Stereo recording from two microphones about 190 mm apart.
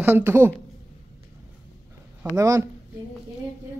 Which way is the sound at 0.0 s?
10° right (ahead or behind).